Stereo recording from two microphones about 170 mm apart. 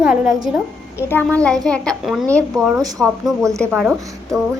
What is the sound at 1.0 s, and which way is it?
A woman's voice, 10° left (ahead or behind).